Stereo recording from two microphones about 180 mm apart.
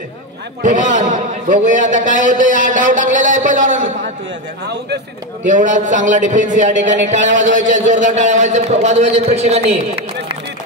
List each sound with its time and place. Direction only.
0.6 s speech: 45° right (ahead or behind)
5.5 s speech: 45° right (ahead or behind)